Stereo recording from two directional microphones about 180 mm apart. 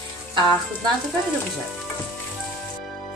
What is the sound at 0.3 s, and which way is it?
Music, 25° right (ahead or behind).